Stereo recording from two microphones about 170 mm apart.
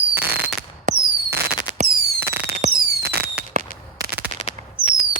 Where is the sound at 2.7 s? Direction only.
65° right (ahead or behind).